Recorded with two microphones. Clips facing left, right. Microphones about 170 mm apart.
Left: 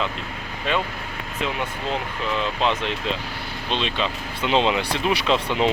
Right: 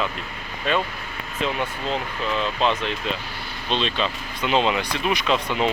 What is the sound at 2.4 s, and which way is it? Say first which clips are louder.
Speech: right 1 dB; 15° left (ahead or behind).